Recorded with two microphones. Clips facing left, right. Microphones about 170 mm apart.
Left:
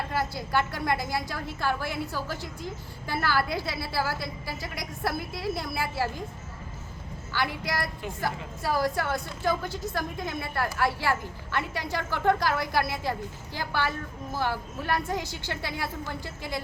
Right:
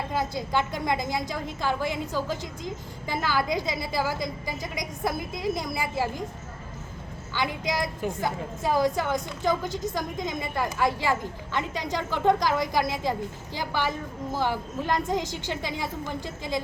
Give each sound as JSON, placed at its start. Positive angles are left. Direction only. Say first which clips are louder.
{"t": 0.1, "sound": "a woman's voice", "louder": "right 2 dB", "side_deg": -20}
{"t": 7.3, "sound": "a woman's voice", "louder": "right 2 dB", "side_deg": -20}